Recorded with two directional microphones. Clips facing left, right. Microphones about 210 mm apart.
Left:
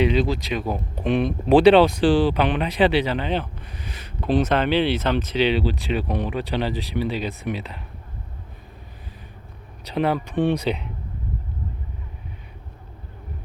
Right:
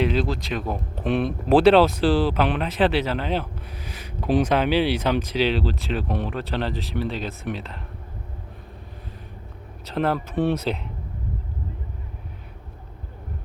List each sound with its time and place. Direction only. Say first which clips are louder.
0.0 s speech: left 2 dB; centre (ahead or behind)
9.8 s speech: left 1 dB; centre (ahead or behind)